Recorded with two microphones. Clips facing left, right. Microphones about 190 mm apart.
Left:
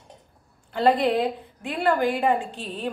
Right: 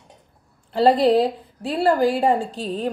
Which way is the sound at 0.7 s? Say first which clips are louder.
Right 5 dB; 35° right (ahead or behind).